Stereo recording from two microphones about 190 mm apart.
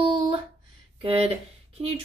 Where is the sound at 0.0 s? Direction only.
25° right (ahead or behind).